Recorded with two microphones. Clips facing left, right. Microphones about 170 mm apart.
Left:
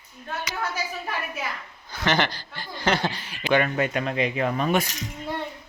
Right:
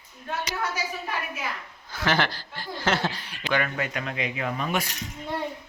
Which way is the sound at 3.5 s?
25° left (ahead or behind).